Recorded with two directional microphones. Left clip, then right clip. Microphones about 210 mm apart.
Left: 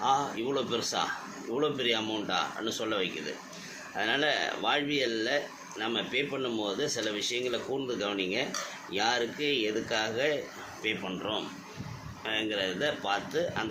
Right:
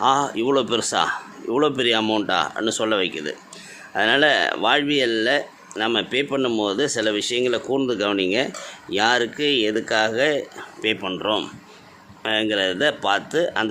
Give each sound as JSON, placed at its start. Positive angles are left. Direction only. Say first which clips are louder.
{"t": 0.0, "sound": "speech", "louder": "right 9 dB", "side_deg": -55}